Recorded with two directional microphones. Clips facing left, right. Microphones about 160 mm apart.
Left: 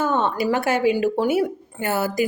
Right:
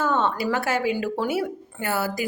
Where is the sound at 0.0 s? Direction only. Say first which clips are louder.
Left 2 dB; 15° left (ahead or behind).